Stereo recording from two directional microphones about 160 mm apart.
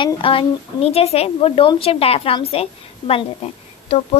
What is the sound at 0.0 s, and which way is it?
A woman's voice, 35° left (ahead or behind).